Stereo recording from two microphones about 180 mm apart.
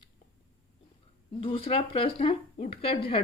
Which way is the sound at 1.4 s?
30° left (ahead or behind).